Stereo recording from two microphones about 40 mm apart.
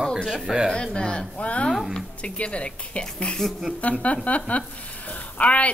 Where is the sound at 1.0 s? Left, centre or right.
Left.